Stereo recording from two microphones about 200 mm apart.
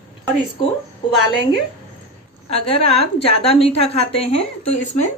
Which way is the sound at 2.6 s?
30° left (ahead or behind).